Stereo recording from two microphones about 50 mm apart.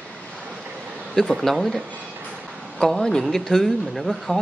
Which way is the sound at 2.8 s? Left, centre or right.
Centre.